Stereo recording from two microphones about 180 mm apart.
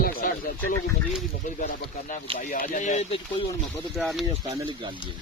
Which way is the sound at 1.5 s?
50° left (ahead or behind).